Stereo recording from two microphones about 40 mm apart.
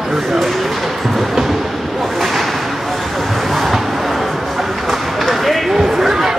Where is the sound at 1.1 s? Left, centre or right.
Centre.